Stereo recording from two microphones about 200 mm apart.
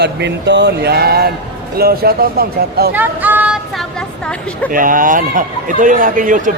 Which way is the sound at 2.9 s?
10° right (ahead or behind).